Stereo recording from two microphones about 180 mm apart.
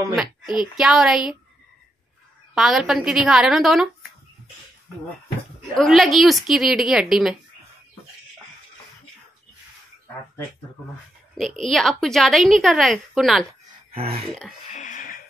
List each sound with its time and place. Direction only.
0.1 s a woman's voice: 5° right (ahead or behind)
2.5 s a woman's voice: centre (ahead or behind)
5.8 s a woman's voice: centre (ahead or behind)
11.6 s a woman's voice: 5° left (ahead or behind)
13.9 s speech: 35° right (ahead or behind)
14.7 s a sound: 45° left (ahead or behind)